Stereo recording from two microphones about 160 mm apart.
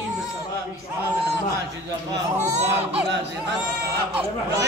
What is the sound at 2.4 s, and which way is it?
Speech, 45° right (ahead or behind).